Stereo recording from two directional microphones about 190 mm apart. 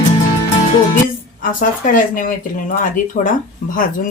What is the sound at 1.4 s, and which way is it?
Speech, 45° left (ahead or behind).